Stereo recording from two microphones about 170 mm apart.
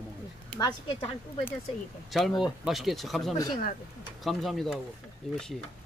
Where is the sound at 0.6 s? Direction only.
25° left (ahead or behind).